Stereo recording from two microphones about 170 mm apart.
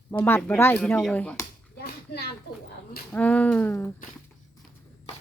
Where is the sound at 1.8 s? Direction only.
75° left (ahead or behind).